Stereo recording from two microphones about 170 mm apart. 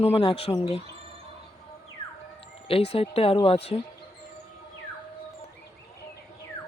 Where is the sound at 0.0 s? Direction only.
35° left (ahead or behind).